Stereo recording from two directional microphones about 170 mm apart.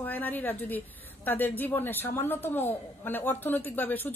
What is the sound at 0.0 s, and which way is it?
A woman's voice, 10° left (ahead or behind).